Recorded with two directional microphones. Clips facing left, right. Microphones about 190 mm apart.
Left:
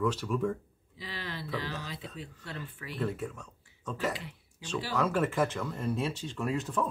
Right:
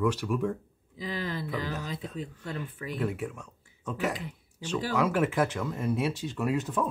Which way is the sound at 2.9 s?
10° right (ahead or behind).